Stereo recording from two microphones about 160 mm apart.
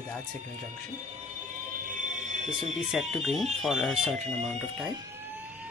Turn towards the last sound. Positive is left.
turn(degrees=0)  # may be behind; listen again after turning